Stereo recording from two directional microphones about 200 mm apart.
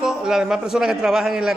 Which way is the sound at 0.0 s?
5° right (ahead or behind).